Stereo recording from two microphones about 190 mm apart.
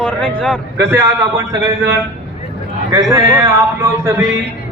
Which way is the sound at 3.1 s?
15° right (ahead or behind).